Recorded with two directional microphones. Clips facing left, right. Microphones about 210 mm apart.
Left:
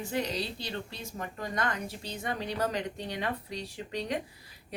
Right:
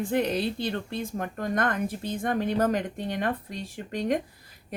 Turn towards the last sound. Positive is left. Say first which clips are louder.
# right 6 dB
turn(degrees=-50)  # may be behind; listen again after turning